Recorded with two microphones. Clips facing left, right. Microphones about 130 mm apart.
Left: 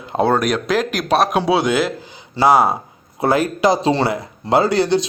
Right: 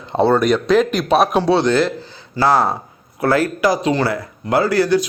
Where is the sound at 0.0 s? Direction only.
5° left (ahead or behind).